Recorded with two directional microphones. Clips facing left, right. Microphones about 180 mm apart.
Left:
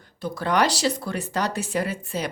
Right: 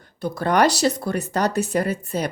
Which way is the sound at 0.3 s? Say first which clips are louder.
Right 4 dB; 45° right (ahead or behind).